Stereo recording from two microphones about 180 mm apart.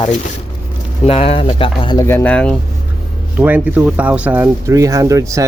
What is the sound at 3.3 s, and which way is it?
Speech, 10° right (ahead or behind).